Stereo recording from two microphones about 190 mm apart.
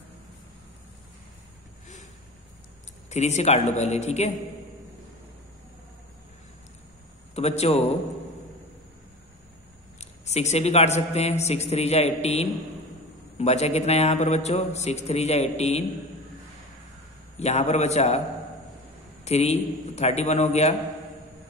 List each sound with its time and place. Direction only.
3.1 s a man's voice: 35° left (ahead or behind)
7.3 s a man's voice: 35° left (ahead or behind)
9.9 s a man's voice: 35° left (ahead or behind)
17.4 s a man's voice: 35° left (ahead or behind)
19.2 s a man's voice: 35° left (ahead or behind)